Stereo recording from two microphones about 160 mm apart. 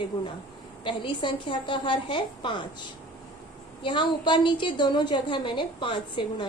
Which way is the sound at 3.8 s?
30° left (ahead or behind).